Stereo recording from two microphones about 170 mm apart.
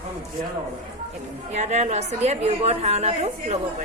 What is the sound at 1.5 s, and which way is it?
A woman's voice, 40° right (ahead or behind).